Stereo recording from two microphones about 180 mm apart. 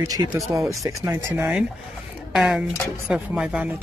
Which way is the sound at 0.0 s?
20° right (ahead or behind).